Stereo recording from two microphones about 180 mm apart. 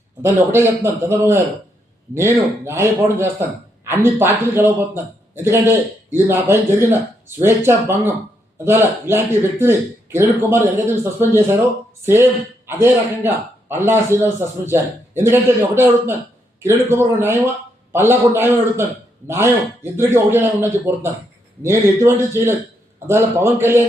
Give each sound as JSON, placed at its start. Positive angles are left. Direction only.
{"t": 0.2, "sound": "speech", "side_deg": -15}